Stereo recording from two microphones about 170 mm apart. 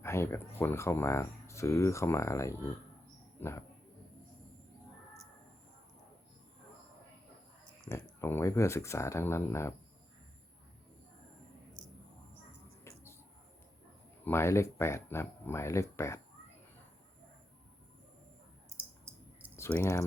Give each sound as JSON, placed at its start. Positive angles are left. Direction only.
{"t": 0.0, "sound": "speech", "side_deg": 15}
{"t": 7.9, "sound": "speech", "side_deg": 15}
{"t": 14.3, "sound": "speech", "side_deg": 15}
{"t": 19.5, "sound": "speech", "side_deg": 15}